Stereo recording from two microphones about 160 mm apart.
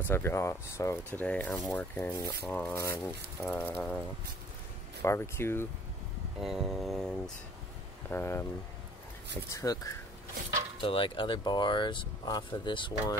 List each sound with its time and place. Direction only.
0.1 s speech: 15° left (ahead or behind)
2.4 s speech: 5° left (ahead or behind)
2.7 s speech: 15° left (ahead or behind)
5.0 s speech: 15° left (ahead or behind)
6.4 s vehicle: centre (ahead or behind)
8.1 s speech: 15° left (ahead or behind)
9.5 s speech: 20° left (ahead or behind)
10.8 s speech: 30° left (ahead or behind)